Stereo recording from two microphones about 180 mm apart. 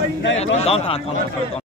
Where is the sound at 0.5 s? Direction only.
35° left (ahead or behind).